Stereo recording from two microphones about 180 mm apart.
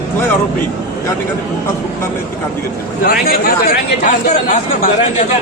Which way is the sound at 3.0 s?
55° left (ahead or behind).